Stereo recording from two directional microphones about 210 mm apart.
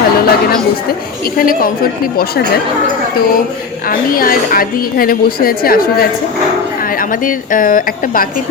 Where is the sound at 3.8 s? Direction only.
45° left (ahead or behind).